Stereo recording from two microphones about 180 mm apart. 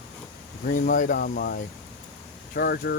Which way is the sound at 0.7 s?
50° left (ahead or behind).